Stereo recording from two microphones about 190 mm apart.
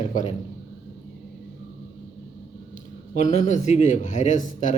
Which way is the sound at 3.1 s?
40° left (ahead or behind).